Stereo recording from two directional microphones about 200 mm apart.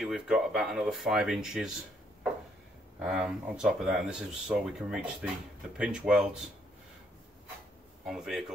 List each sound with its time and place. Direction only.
0.0 s speech: 5° right (ahead or behind)
3.0 s speech: 5° right (ahead or behind)
8.0 s speech: centre (ahead or behind)